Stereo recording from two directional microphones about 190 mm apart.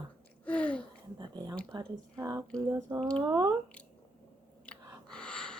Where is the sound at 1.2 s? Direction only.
20° right (ahead or behind).